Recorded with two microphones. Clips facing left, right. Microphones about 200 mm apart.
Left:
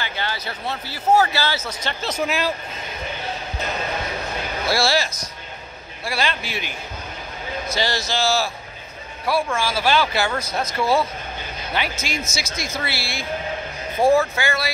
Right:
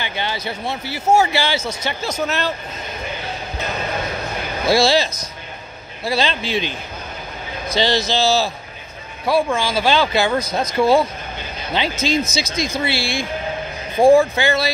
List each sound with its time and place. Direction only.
0.0 s speech: 20° right (ahead or behind)
2.0 s speech: 5° left (ahead or behind)
4.6 s a man's voice: 20° right (ahead or behind)